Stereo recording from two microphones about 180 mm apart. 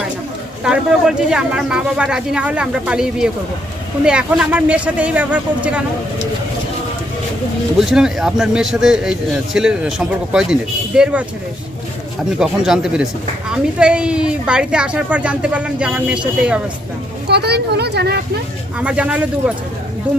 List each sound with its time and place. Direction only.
0.6 s a man's voice: 5° right (ahead or behind)
7.8 s a man's voice: 5° right (ahead or behind)
12.4 s a man's voice: centre (ahead or behind)
17.2 s speech: 65° right (ahead or behind)
18.8 s speech: 5° right (ahead or behind)